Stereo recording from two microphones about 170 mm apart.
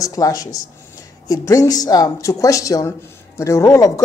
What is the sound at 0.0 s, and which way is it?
A woman's voice, 20° left (ahead or behind).